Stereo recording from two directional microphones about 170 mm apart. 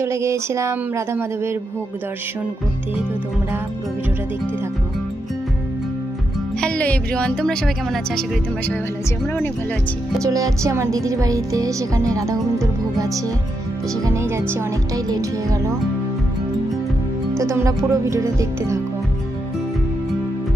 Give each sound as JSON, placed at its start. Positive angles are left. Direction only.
{"t": 0.0, "sound": "speech", "side_deg": -15}
{"t": 6.6, "sound": "speech", "side_deg": 10}
{"t": 10.2, "sound": "speech", "side_deg": -20}
{"t": 17.4, "sound": "speech", "side_deg": -15}